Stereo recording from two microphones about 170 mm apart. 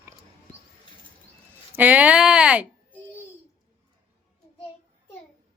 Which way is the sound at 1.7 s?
10° right (ahead or behind).